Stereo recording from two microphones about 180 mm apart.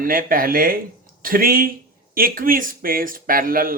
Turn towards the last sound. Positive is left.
turn(degrees=-50)  # may be behind; listen again after turning